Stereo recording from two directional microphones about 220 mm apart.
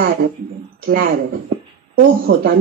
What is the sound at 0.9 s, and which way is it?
A woman's voice, 40° right (ahead or behind).